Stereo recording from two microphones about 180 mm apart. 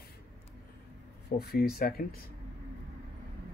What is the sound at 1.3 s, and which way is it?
Speech, 60° left (ahead or behind).